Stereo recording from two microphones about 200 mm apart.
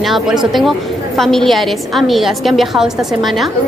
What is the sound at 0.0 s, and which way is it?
A woman's voice, centre (ahead or behind).